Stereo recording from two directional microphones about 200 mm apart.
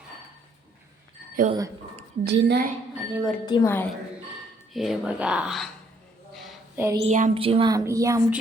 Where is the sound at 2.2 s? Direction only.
55° right (ahead or behind).